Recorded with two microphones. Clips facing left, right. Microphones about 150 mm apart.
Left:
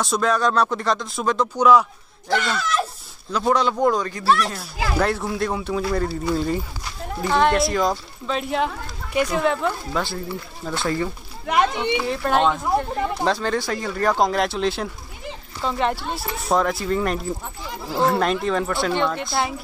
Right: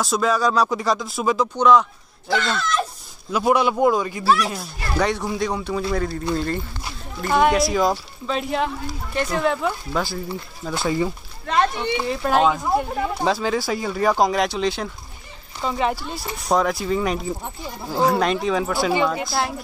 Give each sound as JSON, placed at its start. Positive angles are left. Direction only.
{"t": 0.0, "sound": "speech", "side_deg": 0}
{"t": 3.3, "sound": "speech", "side_deg": -10}
{"t": 7.2, "sound": "speech", "side_deg": -5}
{"t": 11.4, "sound": "speech", "side_deg": 15}
{"t": 12.0, "sound": "speech", "side_deg": 0}